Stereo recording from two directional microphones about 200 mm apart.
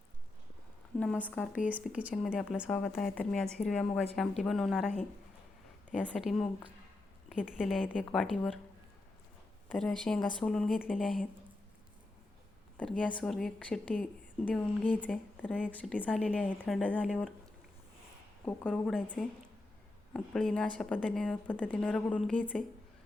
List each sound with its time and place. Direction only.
0.9 s a woman's voice: 5° left (ahead or behind)
1.6 s a woman's voice: 5° right (ahead or behind)
6.0 s a woman's voice: centre (ahead or behind)
9.6 s a woman's voice: 5° left (ahead or behind)
13.0 s a woman's voice: 5° left (ahead or behind)
18.4 s a woman's voice: 5° left (ahead or behind)
20.1 s a woman's voice: 5° left (ahead or behind)